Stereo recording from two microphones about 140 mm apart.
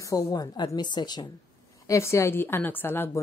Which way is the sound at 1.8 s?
20° left (ahead or behind).